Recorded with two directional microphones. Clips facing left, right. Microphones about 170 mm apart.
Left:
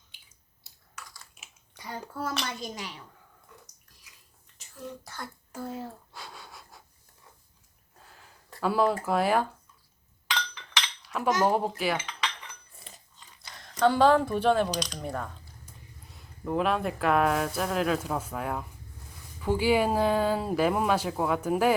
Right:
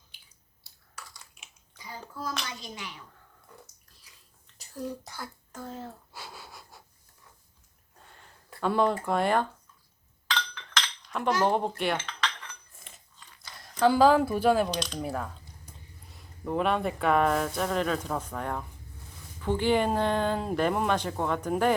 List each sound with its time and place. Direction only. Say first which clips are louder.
1.7 s a child's voice: left 4 dB; 70° left (ahead or behind)
2.5 s speech: left 4 dB; 45° left (ahead or behind)
4.1 s bathtub: even; 30° right (ahead or behind)
4.5 s a sound: right 6 dB; 35° right (ahead or behind)
5.2 s speech: left 3 dB; 10° left (ahead or behind)
6.1 s wheeze: even; 5° right (ahead or behind)
7.9 s a sound: even; centre (ahead or behind)
10.2 s chink: even; 15° left (ahead or behind)
11.4 s speech: left 1 dB; 5° left (ahead or behind)
11.8 s cutlery: even; 5° left (ahead or behind)
12.8 s biting: left 3 dB; 35° left (ahead or behind)
13.1 s a sound: even; 20° left (ahead or behind)
13.6 s speech: right 1 dB; 5° right (ahead or behind)